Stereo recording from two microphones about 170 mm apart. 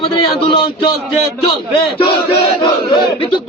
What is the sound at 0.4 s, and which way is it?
Speech, 30° left (ahead or behind).